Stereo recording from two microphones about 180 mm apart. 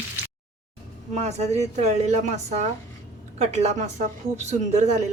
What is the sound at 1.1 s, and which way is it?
A woman's voice, 40° right (ahead or behind).